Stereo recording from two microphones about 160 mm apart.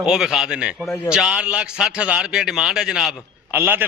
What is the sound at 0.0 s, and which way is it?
A man's voice, 5° right (ahead or behind).